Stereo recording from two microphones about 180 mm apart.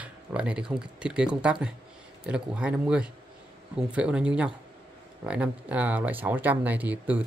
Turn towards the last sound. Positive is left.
turn(degrees=-10)  # may be behind; listen again after turning